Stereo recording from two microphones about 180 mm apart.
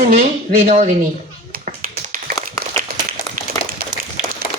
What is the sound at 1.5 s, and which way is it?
Tap, 55° right (ahead or behind).